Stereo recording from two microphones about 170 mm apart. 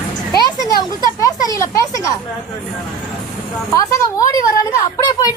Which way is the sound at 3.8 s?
20° left (ahead or behind).